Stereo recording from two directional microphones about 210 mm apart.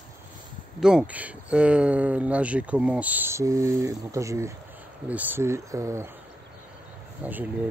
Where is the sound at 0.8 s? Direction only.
5° right (ahead or behind).